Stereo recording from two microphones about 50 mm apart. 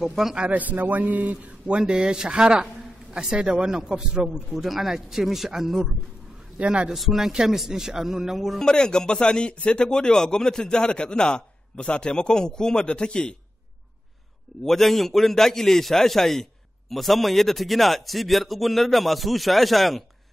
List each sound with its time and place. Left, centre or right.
0.0 s a man's voice: centre
0.5 s a man's voice: right
1.7 s a man's voice: centre
4.3 s a man's voice: centre
6.6 s speech: right
6.9 s a man's voice: centre
8.5 s speech: centre
14.6 s a man's voice: centre